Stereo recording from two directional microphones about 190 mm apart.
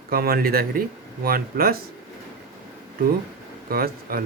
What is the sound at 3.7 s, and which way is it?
Speech, 50° right (ahead or behind).